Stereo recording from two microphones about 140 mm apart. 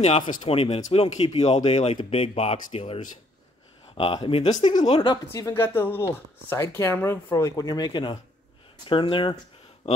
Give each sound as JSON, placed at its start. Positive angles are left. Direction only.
{"t": 0.5, "sound": "speech", "side_deg": 45}
{"t": 5.3, "sound": "speech", "side_deg": 20}
{"t": 9.8, "sound": "a sound", "side_deg": 45}